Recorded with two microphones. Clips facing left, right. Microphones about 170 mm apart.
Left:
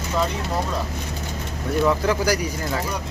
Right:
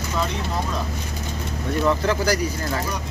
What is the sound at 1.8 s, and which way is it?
Speech, 10° left (ahead or behind).